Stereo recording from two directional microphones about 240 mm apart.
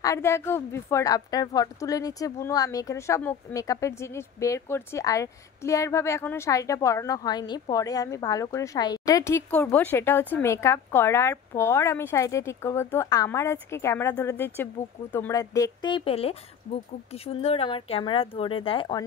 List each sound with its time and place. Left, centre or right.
0.0 s a woman's voice: centre